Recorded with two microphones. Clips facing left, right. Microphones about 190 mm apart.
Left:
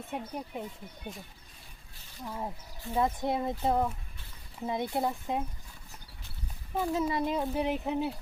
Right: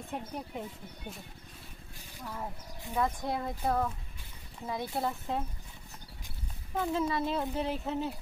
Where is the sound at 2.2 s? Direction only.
20° left (ahead or behind).